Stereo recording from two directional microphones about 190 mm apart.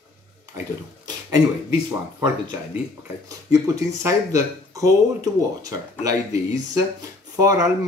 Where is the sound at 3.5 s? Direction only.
15° right (ahead or behind).